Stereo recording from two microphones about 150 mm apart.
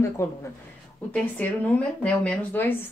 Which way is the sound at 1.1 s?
10° left (ahead or behind).